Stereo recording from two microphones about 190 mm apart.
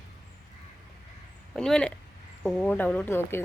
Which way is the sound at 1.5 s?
5° left (ahead or behind).